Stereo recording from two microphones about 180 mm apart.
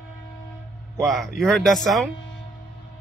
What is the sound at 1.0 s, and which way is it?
Speech, centre (ahead or behind).